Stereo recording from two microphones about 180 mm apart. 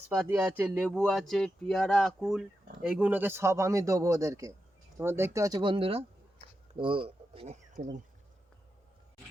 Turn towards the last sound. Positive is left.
turn(degrees=-40)  # may be behind; listen again after turning